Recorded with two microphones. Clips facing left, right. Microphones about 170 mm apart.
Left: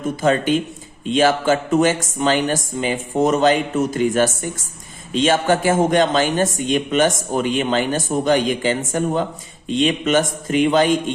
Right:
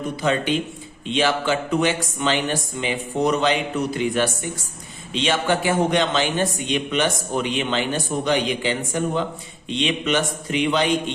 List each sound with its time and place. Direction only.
0.2 s a man's voice: 45° left (ahead or behind)